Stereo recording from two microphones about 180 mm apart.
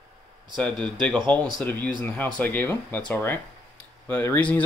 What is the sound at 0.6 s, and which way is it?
Speech, 5° left (ahead or behind).